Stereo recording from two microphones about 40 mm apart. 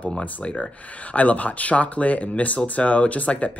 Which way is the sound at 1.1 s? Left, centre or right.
Left.